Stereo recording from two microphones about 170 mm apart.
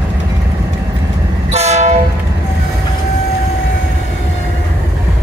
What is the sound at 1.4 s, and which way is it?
Train, 40° right (ahead or behind).